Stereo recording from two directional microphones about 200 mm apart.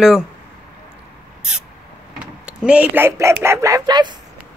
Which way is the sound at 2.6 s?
5° right (ahead or behind).